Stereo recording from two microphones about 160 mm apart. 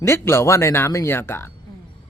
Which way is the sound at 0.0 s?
15° left (ahead or behind).